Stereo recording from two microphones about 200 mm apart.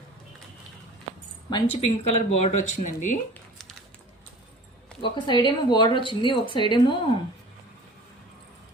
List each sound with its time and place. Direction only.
1.5 s speech: 25° left (ahead or behind)
3.6 s a sound: centre (ahead or behind)
5.0 s speech: 25° left (ahead or behind)